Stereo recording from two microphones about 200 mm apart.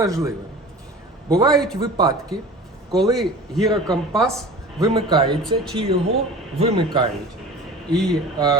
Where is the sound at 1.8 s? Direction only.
20° right (ahead or behind).